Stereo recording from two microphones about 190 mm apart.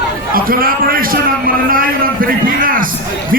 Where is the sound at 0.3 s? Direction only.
50° right (ahead or behind).